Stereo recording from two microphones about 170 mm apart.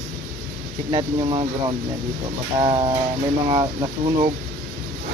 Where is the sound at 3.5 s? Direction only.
30° right (ahead or behind).